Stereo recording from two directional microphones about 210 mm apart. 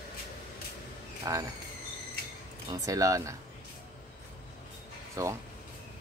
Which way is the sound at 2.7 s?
15° right (ahead or behind).